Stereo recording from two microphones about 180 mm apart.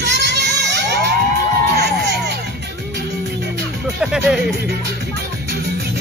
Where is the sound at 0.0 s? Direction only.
75° right (ahead or behind).